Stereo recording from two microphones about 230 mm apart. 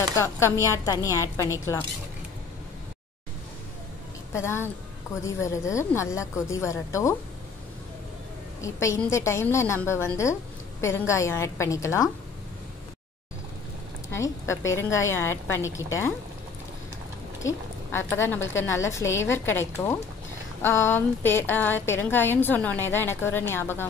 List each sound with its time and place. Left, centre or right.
0.2 s a woman's voice: centre
4.3 s a woman's voice: centre
8.5 s a woman's voice: centre
14.7 s a woman's voice: centre
17.4 s speech: centre
18.4 s a woman's voice: left
18.7 s a woman's voice: centre